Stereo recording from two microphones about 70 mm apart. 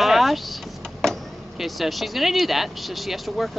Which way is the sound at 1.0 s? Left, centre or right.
Centre.